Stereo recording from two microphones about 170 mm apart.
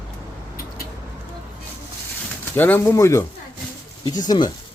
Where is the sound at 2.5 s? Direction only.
10° left (ahead or behind).